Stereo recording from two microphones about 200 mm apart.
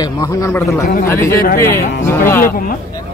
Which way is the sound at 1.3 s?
50° left (ahead or behind).